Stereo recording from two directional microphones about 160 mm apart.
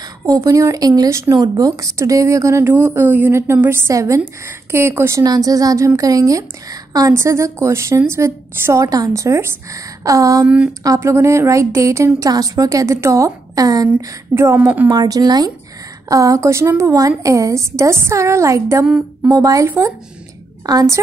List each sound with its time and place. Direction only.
0.2 s speech: 20° right (ahead or behind)
10.4 s a woman's voice: 10° right (ahead or behind)
10.8 s a woman's voice: 20° right (ahead or behind)
14.9 s speech: 25° right (ahead or behind)